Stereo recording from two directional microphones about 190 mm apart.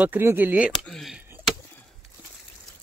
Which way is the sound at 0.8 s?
Centre (ahead or behind).